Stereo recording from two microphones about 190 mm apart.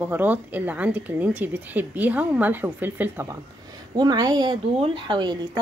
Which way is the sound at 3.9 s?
20° right (ahead or behind).